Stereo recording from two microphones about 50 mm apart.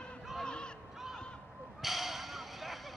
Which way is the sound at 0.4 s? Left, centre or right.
Centre.